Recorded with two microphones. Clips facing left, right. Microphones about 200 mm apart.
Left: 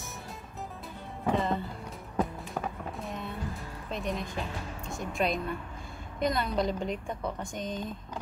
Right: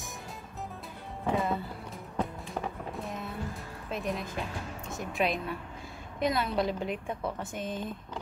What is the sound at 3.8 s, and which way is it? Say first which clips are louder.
A woman's voice: even; centre (ahead or behind).